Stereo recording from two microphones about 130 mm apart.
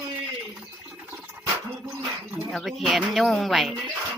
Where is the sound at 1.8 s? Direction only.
15° right (ahead or behind).